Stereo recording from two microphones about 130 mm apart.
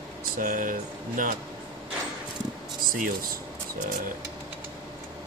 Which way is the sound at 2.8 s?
90° right.